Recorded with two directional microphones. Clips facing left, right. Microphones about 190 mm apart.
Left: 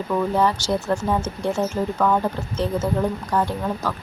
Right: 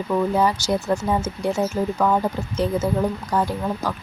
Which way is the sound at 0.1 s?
10° right (ahead or behind).